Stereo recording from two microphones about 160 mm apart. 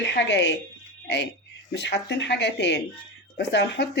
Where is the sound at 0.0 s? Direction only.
90° left.